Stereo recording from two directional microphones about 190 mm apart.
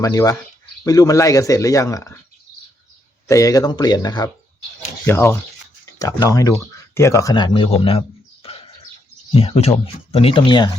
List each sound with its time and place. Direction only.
0.0 s speech: 15° left (ahead or behind)
3.2 s speech: 15° left (ahead or behind)
9.3 s speech: 30° left (ahead or behind)